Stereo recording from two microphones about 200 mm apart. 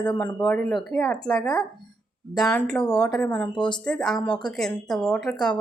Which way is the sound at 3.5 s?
25° left (ahead or behind).